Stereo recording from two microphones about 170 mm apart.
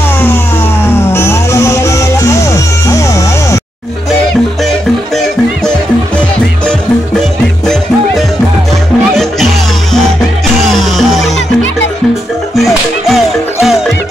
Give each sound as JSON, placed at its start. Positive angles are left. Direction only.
{"t": 1.1, "sound": "music", "side_deg": 15}
{"t": 7.6, "sound": "music", "side_deg": 0}
{"t": 10.7, "sound": "music", "side_deg": 0}
{"t": 12.5, "sound": "music", "side_deg": 0}